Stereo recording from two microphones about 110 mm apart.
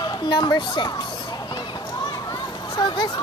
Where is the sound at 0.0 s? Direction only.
45° left (ahead or behind).